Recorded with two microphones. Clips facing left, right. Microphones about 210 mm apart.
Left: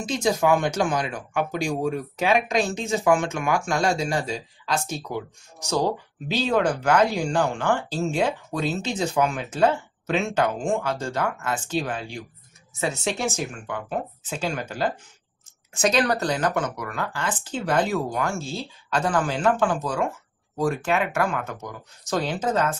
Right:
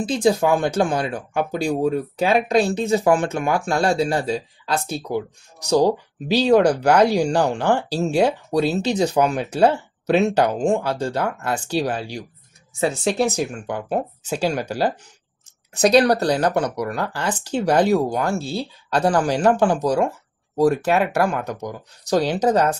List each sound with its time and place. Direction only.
0.0 s speech: 35° right (ahead or behind)